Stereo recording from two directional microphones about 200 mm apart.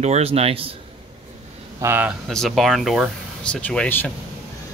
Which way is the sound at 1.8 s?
10° right (ahead or behind).